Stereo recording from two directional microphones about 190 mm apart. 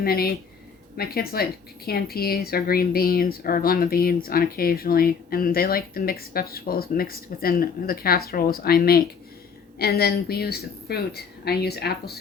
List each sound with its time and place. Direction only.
0.0 s speech: 50° left (ahead or behind)